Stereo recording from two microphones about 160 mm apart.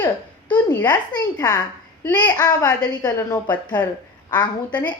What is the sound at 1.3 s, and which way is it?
A woman's voice, 25° left (ahead or behind).